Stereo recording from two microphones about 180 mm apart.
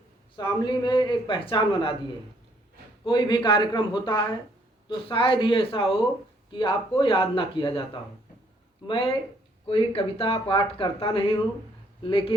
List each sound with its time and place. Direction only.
0.3 s a man's voice: 25° left (ahead or behind)
3.1 s a man's voice: 25° left (ahead or behind)